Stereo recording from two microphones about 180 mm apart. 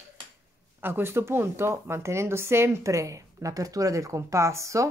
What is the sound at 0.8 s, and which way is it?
Speech, 10° right (ahead or behind).